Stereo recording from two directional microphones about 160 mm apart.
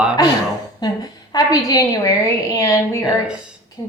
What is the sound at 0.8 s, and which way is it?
A woman's voice, 25° left (ahead or behind).